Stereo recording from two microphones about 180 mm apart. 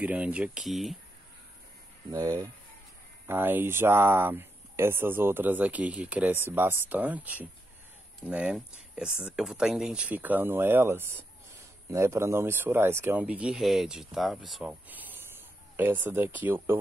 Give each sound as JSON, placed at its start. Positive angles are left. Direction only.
{"t": 0.0, "sound": "speech", "side_deg": -5}
{"t": 2.0, "sound": "speech", "side_deg": -20}